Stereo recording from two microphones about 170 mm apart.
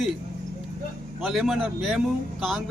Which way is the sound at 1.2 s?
Centre (ahead or behind).